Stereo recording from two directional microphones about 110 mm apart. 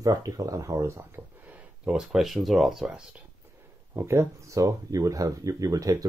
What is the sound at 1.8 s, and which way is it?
Speech, 5° right (ahead or behind).